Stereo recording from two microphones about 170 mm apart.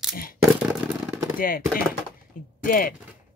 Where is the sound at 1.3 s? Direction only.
55° left (ahead or behind).